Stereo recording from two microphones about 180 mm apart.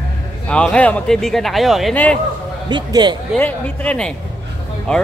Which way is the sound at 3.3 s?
5° left (ahead or behind).